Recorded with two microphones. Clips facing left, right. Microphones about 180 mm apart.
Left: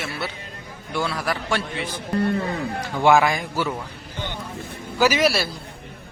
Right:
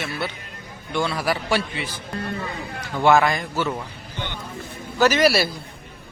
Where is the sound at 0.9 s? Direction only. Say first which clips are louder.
Right 2 dB; centre (ahead or behind).